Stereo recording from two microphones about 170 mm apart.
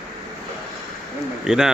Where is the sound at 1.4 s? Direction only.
5° right (ahead or behind).